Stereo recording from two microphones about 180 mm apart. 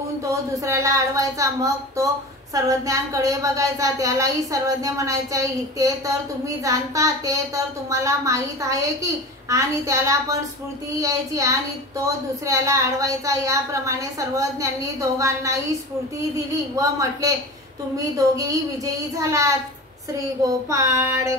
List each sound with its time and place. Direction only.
0.2 s a woman's voice: 15° right (ahead or behind)